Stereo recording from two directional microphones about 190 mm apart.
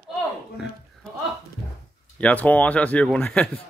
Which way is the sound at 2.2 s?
5° left (ahead or behind).